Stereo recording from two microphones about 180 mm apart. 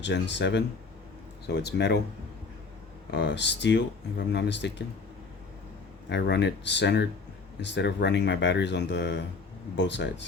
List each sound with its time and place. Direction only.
0.0 s speech: 75° left (ahead or behind)
3.1 s speech: 75° left (ahead or behind)
6.1 s speech: 75° left (ahead or behind)